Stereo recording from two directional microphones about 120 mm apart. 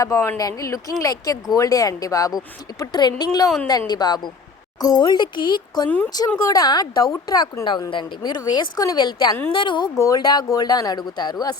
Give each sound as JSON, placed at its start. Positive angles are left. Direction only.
{"t": 0.0, "sound": "a woman's voice", "side_deg": 25}